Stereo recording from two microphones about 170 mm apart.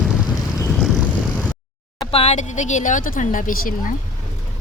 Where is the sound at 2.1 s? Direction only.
40° left (ahead or behind).